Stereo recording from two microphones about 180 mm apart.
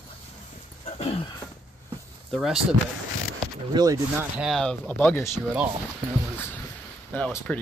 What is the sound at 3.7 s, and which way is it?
Speech, 20° right (ahead or behind).